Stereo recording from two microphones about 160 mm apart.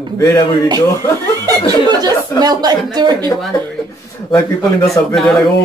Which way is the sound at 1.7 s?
25° right (ahead or behind).